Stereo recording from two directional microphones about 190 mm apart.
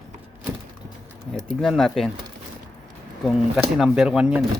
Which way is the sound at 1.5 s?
Centre (ahead or behind).